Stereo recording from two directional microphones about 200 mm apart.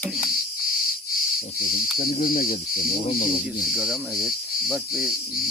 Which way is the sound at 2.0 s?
45° left (ahead or behind).